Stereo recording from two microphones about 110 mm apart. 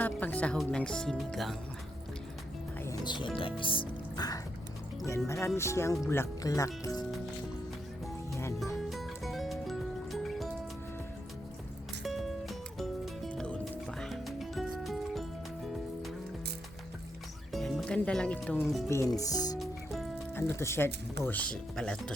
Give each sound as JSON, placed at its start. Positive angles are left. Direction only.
{"t": 0.0, "sound": "speech", "side_deg": 15}
{"t": 3.0, "sound": "speech", "side_deg": 45}
{"t": 5.0, "sound": "speech", "side_deg": 25}
{"t": 8.5, "sound": "music", "side_deg": 0}
{"t": 12.0, "sound": "music", "side_deg": 0}
{"t": 17.5, "sound": "music", "side_deg": 0}
{"t": 18.6, "sound": "speech", "side_deg": 0}
{"t": 18.9, "sound": "speech", "side_deg": 30}
{"t": 19.5, "sound": "music", "side_deg": 0}
{"t": 20.3, "sound": "speech", "side_deg": 20}